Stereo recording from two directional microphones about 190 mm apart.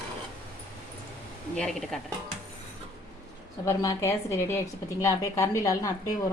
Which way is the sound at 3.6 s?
15° left (ahead or behind).